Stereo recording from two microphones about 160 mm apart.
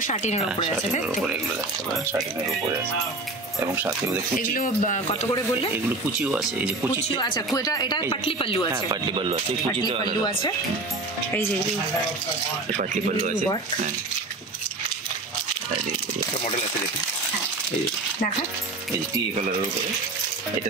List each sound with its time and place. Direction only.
0.0 s speech: 50° left (ahead or behind)
3.5 s speech: 15° right (ahead or behind)
4.4 s speech: 55° left (ahead or behind)
6.1 s speech: 5° right (ahead or behind)
7.2 s a woman's voice: 30° left (ahead or behind)
8.7 s speech: 30° right (ahead or behind)
12.7 s speech: 50° right (ahead or behind)